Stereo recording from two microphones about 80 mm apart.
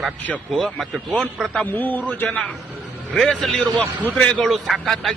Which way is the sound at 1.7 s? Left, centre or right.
Left.